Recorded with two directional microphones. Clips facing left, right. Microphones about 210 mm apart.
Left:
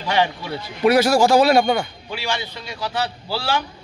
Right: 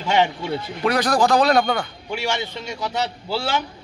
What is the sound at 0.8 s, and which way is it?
A man's voice, 10° left (ahead or behind).